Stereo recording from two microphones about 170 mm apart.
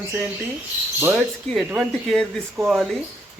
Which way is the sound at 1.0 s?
10° right (ahead or behind).